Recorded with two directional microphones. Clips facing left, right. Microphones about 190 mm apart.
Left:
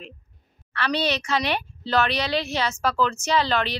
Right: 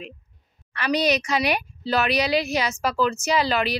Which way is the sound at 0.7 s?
15° right (ahead or behind).